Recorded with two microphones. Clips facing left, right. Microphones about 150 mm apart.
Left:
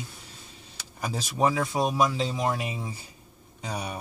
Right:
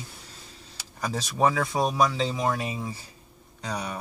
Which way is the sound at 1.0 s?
10° left (ahead or behind).